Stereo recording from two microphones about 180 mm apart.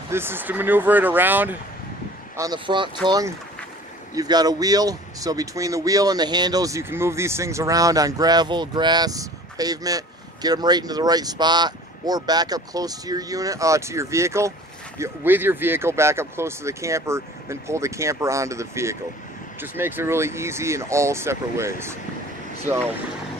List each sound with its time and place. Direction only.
0.1 s speech: 10° right (ahead or behind)
2.3 s speech: 20° right (ahead or behind)